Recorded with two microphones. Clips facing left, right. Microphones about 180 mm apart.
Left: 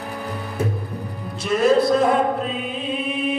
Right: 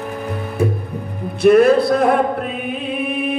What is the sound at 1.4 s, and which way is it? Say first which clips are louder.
Music: right 6 dB; 60° right (ahead or behind).